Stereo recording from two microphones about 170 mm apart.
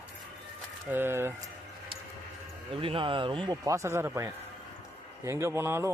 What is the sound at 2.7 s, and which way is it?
Speech, 30° right (ahead or behind).